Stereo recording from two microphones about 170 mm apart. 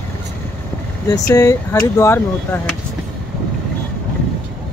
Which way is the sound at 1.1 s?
20° left (ahead or behind).